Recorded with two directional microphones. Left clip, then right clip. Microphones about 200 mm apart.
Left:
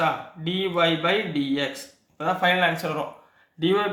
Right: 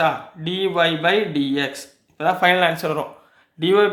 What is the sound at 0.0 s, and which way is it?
Speech, 40° right (ahead or behind).